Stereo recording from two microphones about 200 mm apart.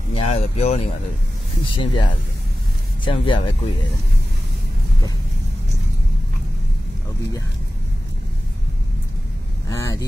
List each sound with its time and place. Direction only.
0.1 s speech: 30° left (ahead or behind)
3.1 s speech: 25° left (ahead or behind)
9.7 s vehicle: 15° left (ahead or behind)